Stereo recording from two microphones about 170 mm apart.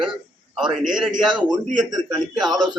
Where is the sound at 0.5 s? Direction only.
5° right (ahead or behind).